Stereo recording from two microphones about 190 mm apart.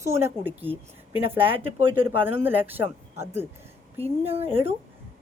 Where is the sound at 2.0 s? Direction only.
10° right (ahead or behind).